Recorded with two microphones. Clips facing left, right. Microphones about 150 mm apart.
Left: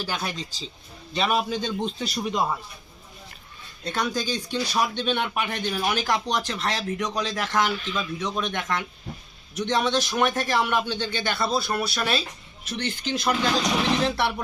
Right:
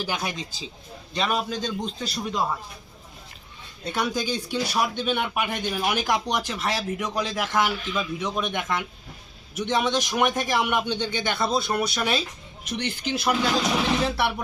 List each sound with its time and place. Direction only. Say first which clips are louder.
0.0 s speech: right 1 dB; 15° right (ahead or behind)
1.1 s a man's voice: left 2 dB; 5° left (ahead or behind)
3.8 s speech: right 1 dB; 10° right (ahead or behind)